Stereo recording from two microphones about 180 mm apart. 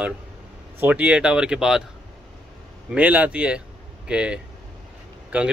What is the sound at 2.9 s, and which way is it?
A man's voice, 10° right (ahead or behind).